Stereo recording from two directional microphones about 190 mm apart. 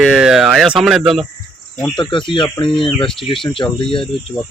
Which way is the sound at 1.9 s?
25° left (ahead or behind).